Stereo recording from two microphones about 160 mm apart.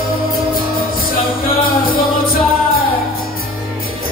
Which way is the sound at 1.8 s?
65° left (ahead or behind).